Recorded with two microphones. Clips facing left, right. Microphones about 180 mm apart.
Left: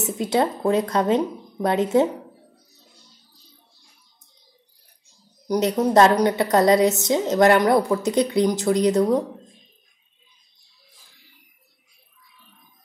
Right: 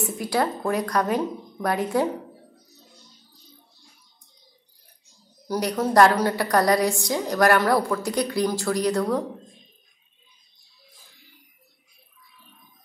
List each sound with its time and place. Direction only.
0.0 s a woman's voice: 20° left (ahead or behind)
5.5 s a woman's voice: 20° left (ahead or behind)